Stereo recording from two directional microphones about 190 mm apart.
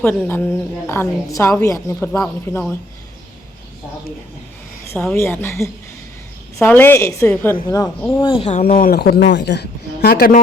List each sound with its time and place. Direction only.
0.0 s a woman's voice: 10° left (ahead or behind)
4.9 s a woman's voice: 10° left (ahead or behind)
8.2 s speech: 30° left (ahead or behind)
8.6 s speech: 50° left (ahead or behind)